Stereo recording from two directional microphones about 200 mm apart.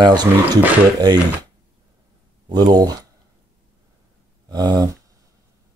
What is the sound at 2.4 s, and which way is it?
Speech, 20° right (ahead or behind).